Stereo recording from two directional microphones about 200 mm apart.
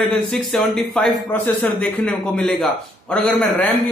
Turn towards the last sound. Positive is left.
turn(degrees=5)  # may be behind; listen again after turning